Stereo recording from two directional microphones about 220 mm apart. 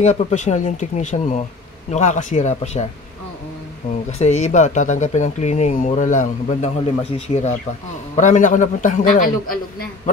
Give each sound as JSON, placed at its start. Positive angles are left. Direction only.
{"t": 0.0, "sound": "speech", "side_deg": 30}
{"t": 4.2, "sound": "speech", "side_deg": 30}